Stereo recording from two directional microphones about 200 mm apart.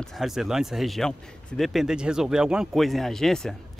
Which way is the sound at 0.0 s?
Centre (ahead or behind).